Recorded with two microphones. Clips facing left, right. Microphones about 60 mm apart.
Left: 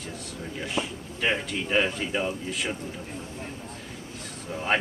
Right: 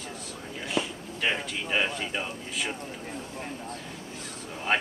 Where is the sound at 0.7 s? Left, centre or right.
Centre.